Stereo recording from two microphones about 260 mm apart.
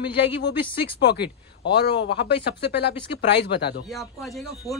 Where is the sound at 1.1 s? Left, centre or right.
Left.